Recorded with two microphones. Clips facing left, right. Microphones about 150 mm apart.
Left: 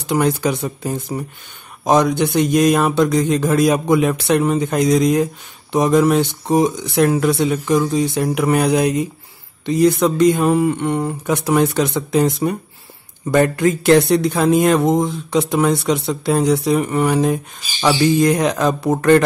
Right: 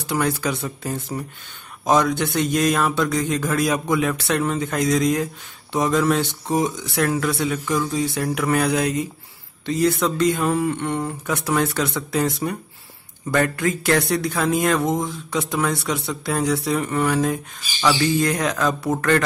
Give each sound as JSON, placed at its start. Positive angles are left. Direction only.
{"t": 0.0, "sound": "a man's voice", "side_deg": 20}